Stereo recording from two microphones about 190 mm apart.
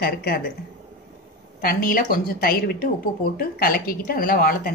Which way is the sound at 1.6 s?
50° left (ahead or behind).